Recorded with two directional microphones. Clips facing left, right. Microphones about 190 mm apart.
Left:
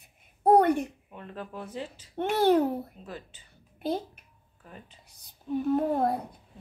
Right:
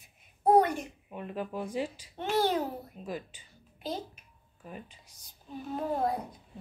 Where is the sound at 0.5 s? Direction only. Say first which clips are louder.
Left 3 dB; 60° left (ahead or behind).